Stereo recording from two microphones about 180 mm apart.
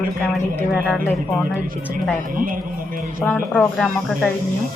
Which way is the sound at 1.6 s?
50° right (ahead or behind).